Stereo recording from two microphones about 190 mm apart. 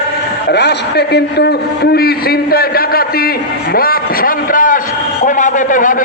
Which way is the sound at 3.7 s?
50° left (ahead or behind).